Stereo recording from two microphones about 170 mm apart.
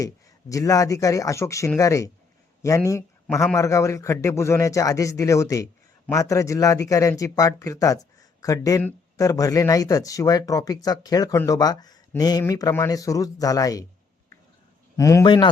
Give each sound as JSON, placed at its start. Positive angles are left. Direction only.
{"t": 0.0, "sound": "a man's voice", "side_deg": 20}
{"t": 8.2, "sound": "a sound", "side_deg": 20}
{"t": 8.8, "sound": "speech", "side_deg": 15}
{"t": 14.9, "sound": "speech", "side_deg": 20}